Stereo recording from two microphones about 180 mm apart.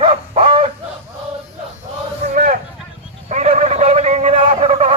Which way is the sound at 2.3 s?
45° right (ahead or behind).